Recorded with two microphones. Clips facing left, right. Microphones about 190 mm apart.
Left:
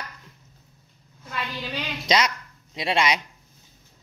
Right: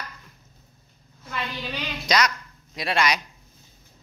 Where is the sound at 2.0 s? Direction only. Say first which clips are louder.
Even; 25° left (ahead or behind).